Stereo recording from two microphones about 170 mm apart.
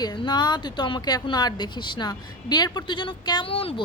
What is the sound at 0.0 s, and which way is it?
A woman's voice, 25° left (ahead or behind).